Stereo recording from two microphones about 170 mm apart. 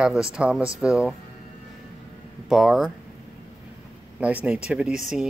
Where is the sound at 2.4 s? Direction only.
Centre (ahead or behind).